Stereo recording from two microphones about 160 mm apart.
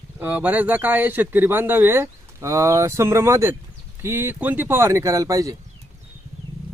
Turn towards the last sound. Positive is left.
turn(degrees=-20)  # may be behind; listen again after turning